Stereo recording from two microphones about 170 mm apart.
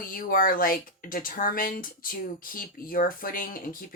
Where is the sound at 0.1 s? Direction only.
55° left (ahead or behind).